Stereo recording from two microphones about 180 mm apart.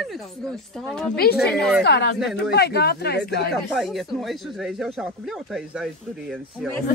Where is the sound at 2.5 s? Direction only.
65° left (ahead or behind).